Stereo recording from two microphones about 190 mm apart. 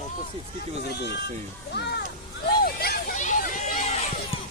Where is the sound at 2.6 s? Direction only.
55° left (ahead or behind); by 4.4 s 35° left (ahead or behind).